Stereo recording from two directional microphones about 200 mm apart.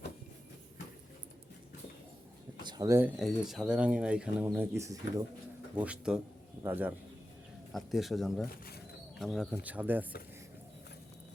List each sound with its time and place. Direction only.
2.6 s a man's voice: 20° right (ahead or behind); by 8.4 s centre (ahead or behind)
8.4 s speech: 50° left (ahead or behind)
9.1 s speech: centre (ahead or behind)